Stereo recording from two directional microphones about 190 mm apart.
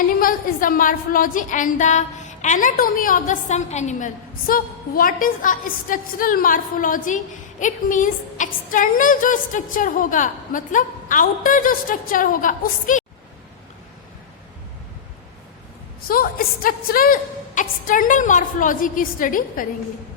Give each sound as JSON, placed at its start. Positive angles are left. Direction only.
{"t": 0.2, "sound": "a woman's voice", "side_deg": 50}
{"t": 16.0, "sound": "a woman's voice", "side_deg": 50}